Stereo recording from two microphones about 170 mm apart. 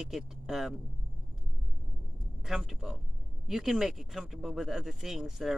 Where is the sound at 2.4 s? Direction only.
Centre (ahead or behind).